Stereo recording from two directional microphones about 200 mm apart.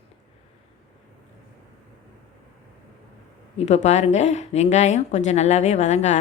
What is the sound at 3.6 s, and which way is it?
A woman's voice, 35° left (ahead or behind).